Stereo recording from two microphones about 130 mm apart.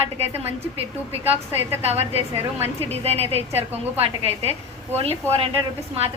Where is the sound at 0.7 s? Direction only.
50° right (ahead or behind).